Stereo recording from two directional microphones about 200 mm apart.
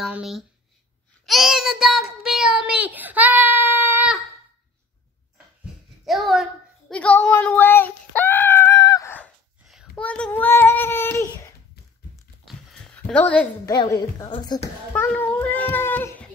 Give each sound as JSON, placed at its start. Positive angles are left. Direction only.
{"t": 0.0, "sound": "speech", "side_deg": -5}
{"t": 1.2, "sound": "child singing", "side_deg": 0}
{"t": 6.0, "sound": "a sound", "side_deg": 0}
{"t": 12.4, "sound": "a sound", "side_deg": 0}
{"t": 13.7, "sound": "a woman's voice", "side_deg": 20}
{"t": 14.9, "sound": "a child's voice", "side_deg": 10}